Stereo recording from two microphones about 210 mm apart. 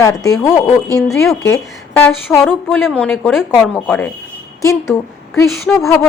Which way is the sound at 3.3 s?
Centre (ahead or behind).